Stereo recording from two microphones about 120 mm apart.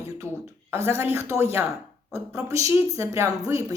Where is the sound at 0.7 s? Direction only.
20° right (ahead or behind).